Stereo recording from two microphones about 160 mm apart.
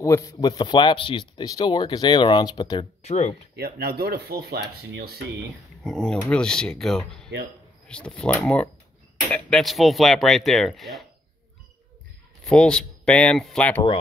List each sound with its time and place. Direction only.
0.0 s speech: 20° left (ahead or behind)
3.0 s speech: 45° left (ahead or behind)
3.5 s speech: 75° right (ahead or behind)
5.9 s speech: centre (ahead or behind)
12.4 s speech: 5° left (ahead or behind)